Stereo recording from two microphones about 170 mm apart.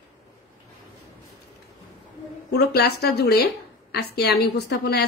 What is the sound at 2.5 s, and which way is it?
A woman's voice, 70° left (ahead or behind).